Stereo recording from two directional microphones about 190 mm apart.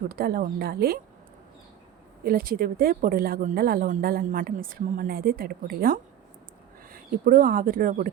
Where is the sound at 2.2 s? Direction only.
50° right (ahead or behind).